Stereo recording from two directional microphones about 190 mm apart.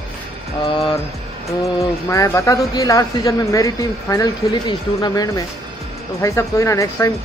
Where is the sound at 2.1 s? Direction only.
15° left (ahead or behind).